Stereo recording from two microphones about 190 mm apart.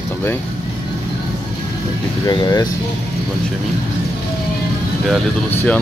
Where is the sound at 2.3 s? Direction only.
20° left (ahead or behind).